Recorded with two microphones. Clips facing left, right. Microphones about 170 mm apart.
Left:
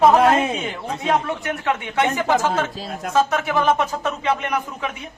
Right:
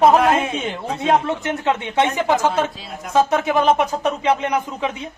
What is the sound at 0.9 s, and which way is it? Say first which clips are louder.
Speech: right 3 dB; 25° right (ahead or behind).